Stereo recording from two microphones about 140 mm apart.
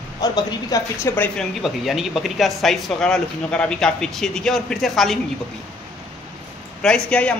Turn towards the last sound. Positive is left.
turn(degrees=10)  # may be behind; listen again after turning